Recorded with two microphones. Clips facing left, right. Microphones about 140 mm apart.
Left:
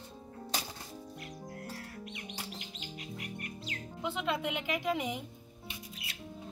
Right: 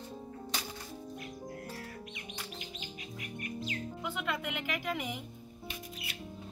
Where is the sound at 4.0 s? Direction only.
25° left (ahead or behind).